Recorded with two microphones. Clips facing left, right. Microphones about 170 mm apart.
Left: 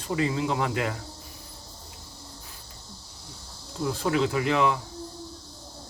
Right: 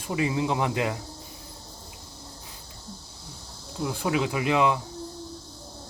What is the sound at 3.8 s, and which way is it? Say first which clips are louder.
Speech: left 1 dB; 15° right (ahead or behind).